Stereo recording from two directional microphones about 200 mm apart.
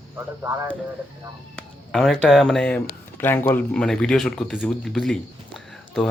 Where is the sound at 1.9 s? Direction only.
Centre (ahead or behind).